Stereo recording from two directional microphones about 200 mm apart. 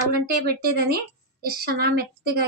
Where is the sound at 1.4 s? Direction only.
50° right (ahead or behind).